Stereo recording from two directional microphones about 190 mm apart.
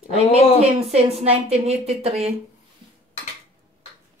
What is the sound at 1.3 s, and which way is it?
Speech, 35° right (ahead or behind).